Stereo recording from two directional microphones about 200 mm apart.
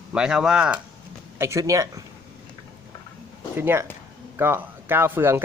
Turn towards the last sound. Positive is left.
turn(degrees=-10)  # may be behind; listen again after turning